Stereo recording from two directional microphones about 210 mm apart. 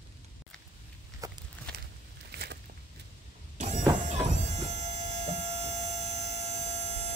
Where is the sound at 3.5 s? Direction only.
35° right (ahead or behind).